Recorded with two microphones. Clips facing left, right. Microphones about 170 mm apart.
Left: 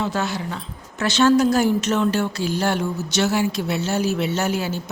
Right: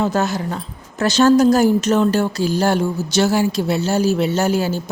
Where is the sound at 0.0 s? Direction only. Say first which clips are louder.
Right 5 dB; 45° right (ahead or behind).